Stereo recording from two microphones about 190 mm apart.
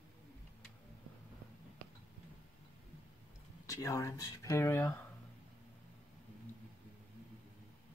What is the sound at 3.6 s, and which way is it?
Speech, 20° left (ahead or behind).